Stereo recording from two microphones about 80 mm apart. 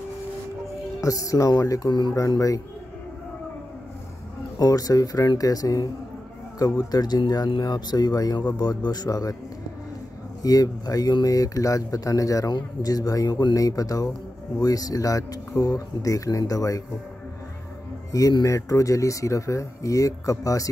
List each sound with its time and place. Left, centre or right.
1.0 s speech: left
1.9 s speech: left
2.1 s speech: left
4.6 s speech: left
10.4 s speech: left
18.4 s speech: left